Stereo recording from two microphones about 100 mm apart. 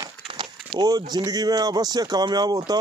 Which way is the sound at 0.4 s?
45° right (ahead or behind).